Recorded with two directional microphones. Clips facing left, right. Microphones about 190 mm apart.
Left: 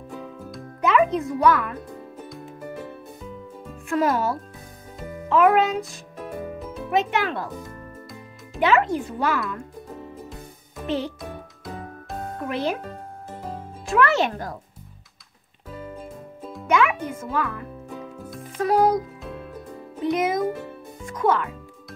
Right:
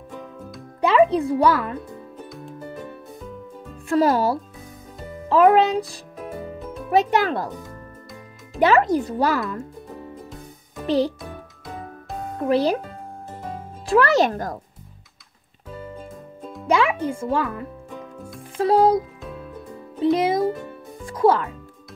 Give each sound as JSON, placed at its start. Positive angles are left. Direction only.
{"t": 0.2, "sound": "music", "side_deg": 0}
{"t": 0.7, "sound": "a child's voice", "side_deg": -30}
{"t": 2.2, "sound": "music", "side_deg": 0}
{"t": 3.9, "sound": "speech", "side_deg": -35}
{"t": 8.5, "sound": "speech", "side_deg": -40}
{"t": 10.9, "sound": "speech", "side_deg": -35}
{"t": 11.1, "sound": "music", "side_deg": 0}
{"t": 12.4, "sound": "a child's voice", "side_deg": -35}
{"t": 13.8, "sound": "speech", "side_deg": -35}
{"t": 16.0, "sound": "music", "side_deg": 5}
{"t": 16.6, "sound": "a child's voice", "side_deg": -30}